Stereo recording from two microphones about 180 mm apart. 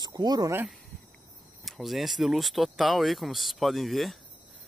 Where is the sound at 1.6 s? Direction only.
Centre (ahead or behind).